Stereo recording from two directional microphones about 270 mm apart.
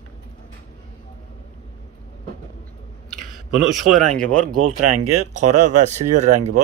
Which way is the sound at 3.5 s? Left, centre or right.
Right.